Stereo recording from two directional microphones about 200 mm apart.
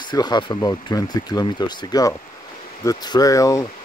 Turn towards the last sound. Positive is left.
turn(degrees=15)  # may be behind; listen again after turning